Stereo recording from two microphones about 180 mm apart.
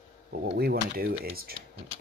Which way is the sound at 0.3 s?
60° right (ahead or behind).